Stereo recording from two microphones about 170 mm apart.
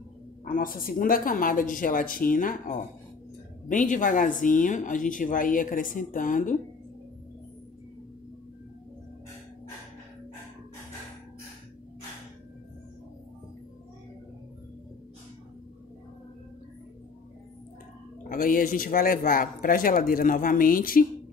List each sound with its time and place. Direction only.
0.5 s speech: 55° left (ahead or behind)
18.3 s speech: 55° left (ahead or behind)